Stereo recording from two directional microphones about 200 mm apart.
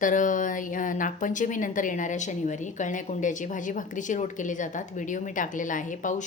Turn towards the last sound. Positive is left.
turn(degrees=40)  # may be behind; listen again after turning